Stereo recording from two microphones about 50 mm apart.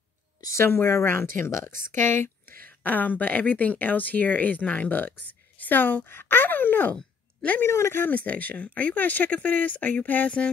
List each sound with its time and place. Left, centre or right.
0.7 s speech: left
2.8 s speech: left
7.6 s speech: left
8.1 s speech: left